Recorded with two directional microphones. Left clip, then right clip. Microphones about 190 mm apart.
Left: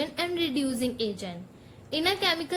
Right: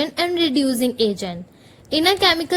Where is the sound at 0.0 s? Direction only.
50° right (ahead or behind).